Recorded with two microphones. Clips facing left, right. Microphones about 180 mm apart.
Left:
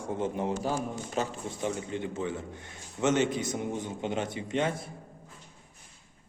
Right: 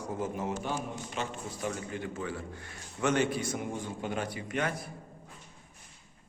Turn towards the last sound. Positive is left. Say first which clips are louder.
# left 3 dB
turn(degrees=25)  # may be behind; listen again after turning